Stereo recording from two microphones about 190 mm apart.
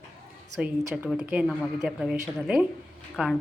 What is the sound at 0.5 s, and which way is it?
A woman's voice, 5° right (ahead or behind).